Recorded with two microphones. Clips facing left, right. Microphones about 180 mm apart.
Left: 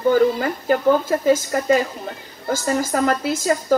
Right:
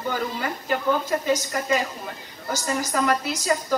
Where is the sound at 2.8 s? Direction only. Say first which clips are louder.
Left 4 dB; 45° left (ahead or behind).